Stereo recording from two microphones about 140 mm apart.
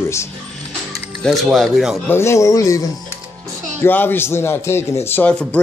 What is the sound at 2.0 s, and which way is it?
Speech, 20° left (ahead or behind).